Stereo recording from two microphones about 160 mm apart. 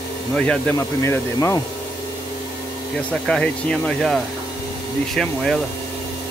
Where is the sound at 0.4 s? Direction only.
5° left (ahead or behind).